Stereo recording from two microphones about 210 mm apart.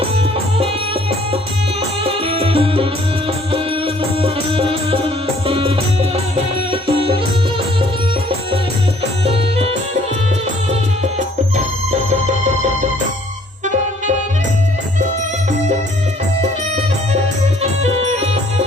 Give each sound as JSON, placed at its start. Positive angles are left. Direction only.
{"t": 2.0, "sound": "music", "side_deg": -25}
{"t": 4.2, "sound": "music", "side_deg": -25}
{"t": 9.2, "sound": "music", "side_deg": -30}
{"t": 11.5, "sound": "music", "side_deg": -35}